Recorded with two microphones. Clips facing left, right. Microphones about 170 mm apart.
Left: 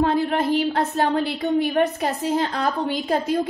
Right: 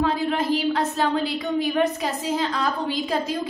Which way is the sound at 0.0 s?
55° left (ahead or behind).